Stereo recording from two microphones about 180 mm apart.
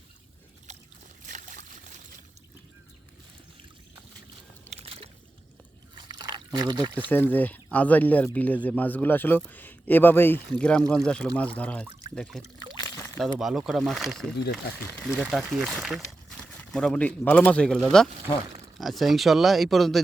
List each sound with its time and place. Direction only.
1.3 s trickle: 45° right (ahead or behind)
4.8 s a sound: 35° right (ahead or behind)
6.1 s pour: 25° right (ahead or behind)
6.9 s speech: 10° left (ahead or behind)
12.8 s a sound: 10° left (ahead or behind)
13.2 s speech: centre (ahead or behind)